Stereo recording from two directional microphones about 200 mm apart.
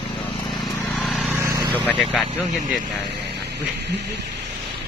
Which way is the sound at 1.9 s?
Centre (ahead or behind).